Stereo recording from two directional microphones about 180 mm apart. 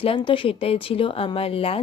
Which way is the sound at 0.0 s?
30° left (ahead or behind).